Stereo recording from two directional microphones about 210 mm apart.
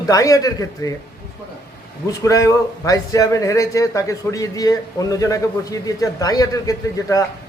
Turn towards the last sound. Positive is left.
turn(degrees=15)  # may be behind; listen again after turning